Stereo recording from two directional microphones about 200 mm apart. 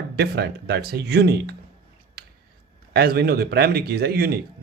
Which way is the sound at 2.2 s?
50° right (ahead or behind).